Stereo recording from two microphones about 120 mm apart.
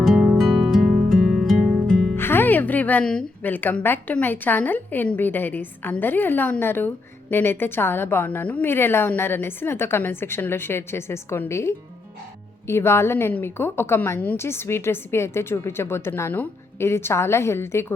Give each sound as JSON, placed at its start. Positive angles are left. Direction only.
{"t": 0.0, "sound": "music", "side_deg": 0}
{"t": 2.1, "sound": "a woman's voice", "side_deg": 20}